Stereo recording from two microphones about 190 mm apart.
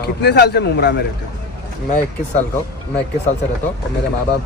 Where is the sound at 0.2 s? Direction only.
60° left (ahead or behind).